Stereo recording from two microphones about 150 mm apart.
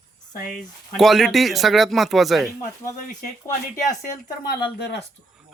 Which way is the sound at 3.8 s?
55° left (ahead or behind).